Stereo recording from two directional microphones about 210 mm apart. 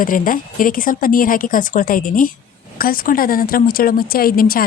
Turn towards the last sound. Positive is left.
turn(degrees=45)  # may be behind; listen again after turning